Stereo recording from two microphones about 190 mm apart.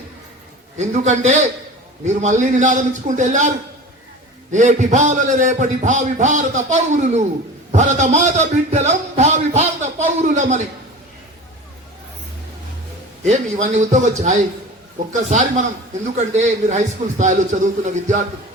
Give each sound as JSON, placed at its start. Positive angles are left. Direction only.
{"t": 0.8, "sound": "a man's voice", "side_deg": -40}
{"t": 4.5, "sound": "a man's voice", "side_deg": -40}
{"t": 13.2, "sound": "a man's voice", "side_deg": -40}